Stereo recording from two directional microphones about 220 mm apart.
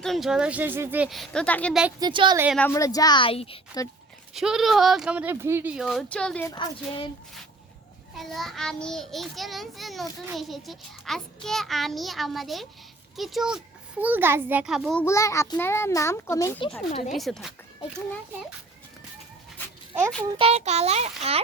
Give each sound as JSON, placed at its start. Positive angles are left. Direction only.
{"t": 0.0, "sound": "a child's voice", "side_deg": 0}
{"t": 2.0, "sound": "a child's voice", "side_deg": -20}
{"t": 2.6, "sound": "a child's voice", "side_deg": 10}
{"t": 4.4, "sound": "a child's voice", "side_deg": 0}
{"t": 6.5, "sound": "speech", "side_deg": 20}
{"t": 8.1, "sound": "a child's voice", "side_deg": 0}
{"t": 15.0, "sound": "a child's voice", "side_deg": 15}
{"t": 16.9, "sound": "a woman's voice", "side_deg": 30}
{"t": 17.2, "sound": "a child's voice", "side_deg": 0}
{"t": 20.3, "sound": "a child's voice", "side_deg": -25}